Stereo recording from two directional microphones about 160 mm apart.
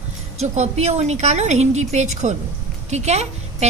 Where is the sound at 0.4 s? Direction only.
45° right (ahead or behind).